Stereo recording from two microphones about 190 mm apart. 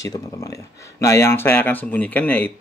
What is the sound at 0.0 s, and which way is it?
A man's voice, 15° left (ahead or behind).